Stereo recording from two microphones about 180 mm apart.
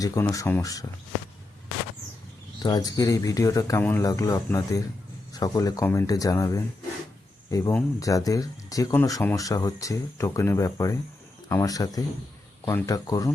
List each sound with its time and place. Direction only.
0.0 s speech: 20° left (ahead or behind)
2.6 s speech: 20° left (ahead or behind)